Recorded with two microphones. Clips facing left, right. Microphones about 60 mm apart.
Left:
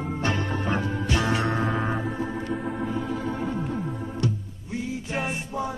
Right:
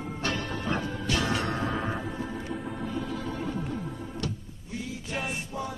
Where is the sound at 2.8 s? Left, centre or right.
Left.